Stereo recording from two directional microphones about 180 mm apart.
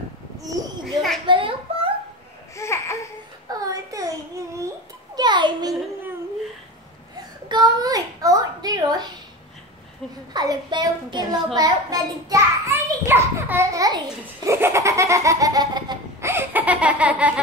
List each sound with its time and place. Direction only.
1.2 s a sound: 30° right (ahead or behind)
2.5 s babbling: 15° left (ahead or behind)
3.5 s babbling: 20° right (ahead or behind)
7.4 s a sound: 25° right (ahead or behind)
10.3 s a child's voice: 20° right (ahead or behind)
16.3 s laughter: 10° right (ahead or behind)